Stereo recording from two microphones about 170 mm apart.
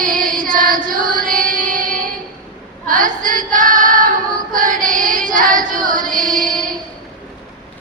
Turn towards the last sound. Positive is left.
turn(degrees=-50)  # may be behind; listen again after turning